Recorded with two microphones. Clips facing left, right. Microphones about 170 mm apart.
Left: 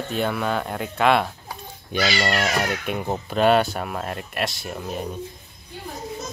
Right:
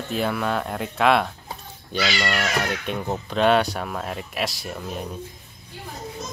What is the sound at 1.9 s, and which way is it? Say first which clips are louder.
Speech: left 2 dB; 15° left (ahead or behind).